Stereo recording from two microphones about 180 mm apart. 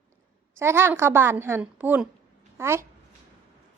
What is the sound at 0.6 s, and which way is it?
A woman's voice, 15° right (ahead or behind).